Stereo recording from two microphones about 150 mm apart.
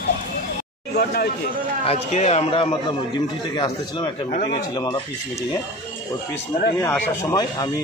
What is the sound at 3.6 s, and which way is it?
Speech, 30° left (ahead or behind).